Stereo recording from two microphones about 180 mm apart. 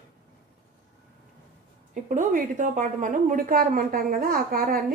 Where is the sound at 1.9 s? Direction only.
45° right (ahead or behind).